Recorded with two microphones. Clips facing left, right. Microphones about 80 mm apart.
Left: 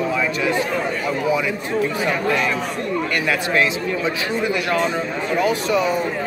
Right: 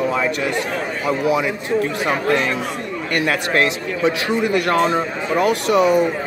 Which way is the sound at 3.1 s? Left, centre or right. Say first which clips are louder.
Right 3 dB; right.